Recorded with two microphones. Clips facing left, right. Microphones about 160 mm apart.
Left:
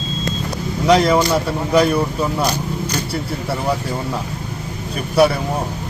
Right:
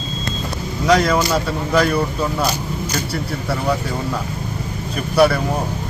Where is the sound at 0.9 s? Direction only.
25° left (ahead or behind).